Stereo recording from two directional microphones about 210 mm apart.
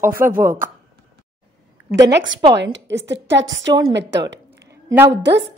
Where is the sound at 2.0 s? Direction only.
60° right (ahead or behind).